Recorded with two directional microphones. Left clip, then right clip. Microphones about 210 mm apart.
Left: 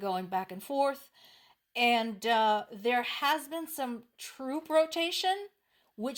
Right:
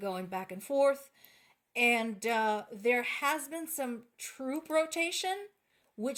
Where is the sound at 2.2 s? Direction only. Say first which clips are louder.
Left 4 dB; 35° left (ahead or behind).